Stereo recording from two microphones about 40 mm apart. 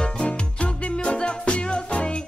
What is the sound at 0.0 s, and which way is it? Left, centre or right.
Music, left.